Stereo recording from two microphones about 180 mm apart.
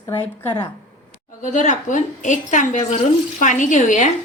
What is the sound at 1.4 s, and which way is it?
A woman's voice, 45° left (ahead or behind).